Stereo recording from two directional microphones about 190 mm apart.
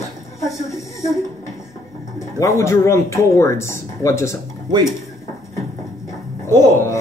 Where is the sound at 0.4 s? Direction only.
15° left (ahead or behind).